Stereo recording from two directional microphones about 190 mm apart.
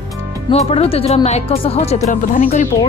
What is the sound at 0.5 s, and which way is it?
Speech, 30° left (ahead or behind).